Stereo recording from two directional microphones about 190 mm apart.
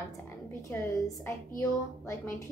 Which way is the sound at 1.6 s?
15° left (ahead or behind).